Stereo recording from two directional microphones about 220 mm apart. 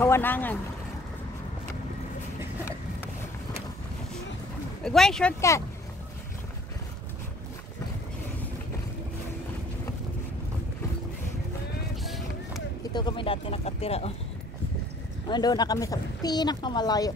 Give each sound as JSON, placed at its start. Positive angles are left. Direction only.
{"t": 0.0, "sound": "speech", "side_deg": 10}
{"t": 4.8, "sound": "speech", "side_deg": 0}
{"t": 12.9, "sound": "speech", "side_deg": 20}
{"t": 15.2, "sound": "speech", "side_deg": 20}